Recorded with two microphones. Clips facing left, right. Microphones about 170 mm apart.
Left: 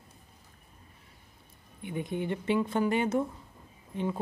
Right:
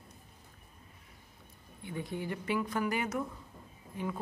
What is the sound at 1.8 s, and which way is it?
Speech, 20° left (ahead or behind).